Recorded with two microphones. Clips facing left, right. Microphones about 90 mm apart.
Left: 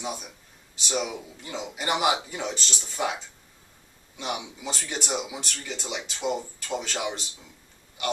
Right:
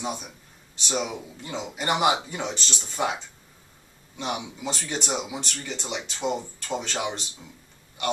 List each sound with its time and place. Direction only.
0.0 s a man's voice: centre (ahead or behind)